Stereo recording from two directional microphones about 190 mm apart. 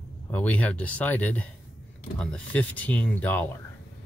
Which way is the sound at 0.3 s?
10° left (ahead or behind).